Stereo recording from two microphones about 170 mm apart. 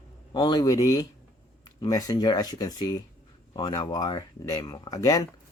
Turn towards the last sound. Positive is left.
turn(degrees=20)  # may be behind; listen again after turning